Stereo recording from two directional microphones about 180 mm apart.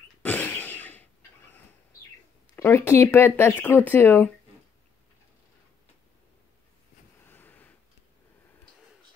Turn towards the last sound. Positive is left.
turn(degrees=10)  # may be behind; listen again after turning